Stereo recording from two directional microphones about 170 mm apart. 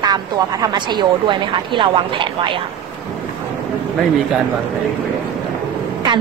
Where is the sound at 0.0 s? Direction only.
25° right (ahead or behind).